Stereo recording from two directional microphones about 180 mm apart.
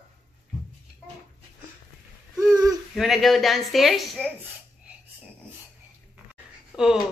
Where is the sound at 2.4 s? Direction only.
20° right (ahead or behind).